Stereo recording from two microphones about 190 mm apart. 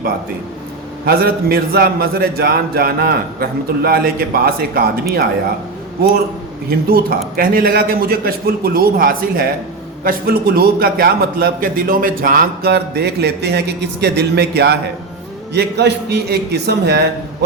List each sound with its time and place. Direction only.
1.0 s a man's voice: 55° right (ahead or behind)
6.0 s a man's voice: 55° right (ahead or behind)